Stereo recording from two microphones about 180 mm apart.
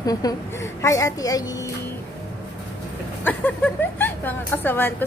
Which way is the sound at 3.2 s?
10° left (ahead or behind).